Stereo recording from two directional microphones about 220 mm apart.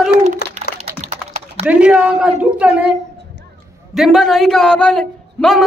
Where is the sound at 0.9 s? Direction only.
30° right (ahead or behind).